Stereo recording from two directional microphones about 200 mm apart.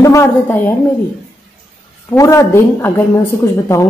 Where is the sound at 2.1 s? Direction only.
15° left (ahead or behind).